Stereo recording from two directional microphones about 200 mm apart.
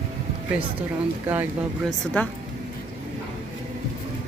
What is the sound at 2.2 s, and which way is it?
Speech, 10° left (ahead or behind).